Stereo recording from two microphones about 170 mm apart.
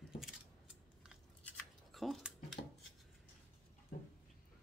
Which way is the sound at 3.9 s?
55° left (ahead or behind).